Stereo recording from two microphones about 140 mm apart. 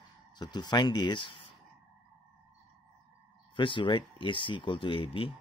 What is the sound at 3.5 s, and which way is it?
Speech, 35° left (ahead or behind).